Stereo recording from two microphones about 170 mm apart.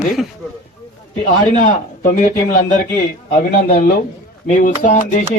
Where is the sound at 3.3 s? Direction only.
55° left (ahead or behind).